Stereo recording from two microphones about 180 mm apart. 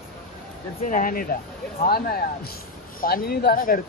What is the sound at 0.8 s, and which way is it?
Speech, 45° left (ahead or behind).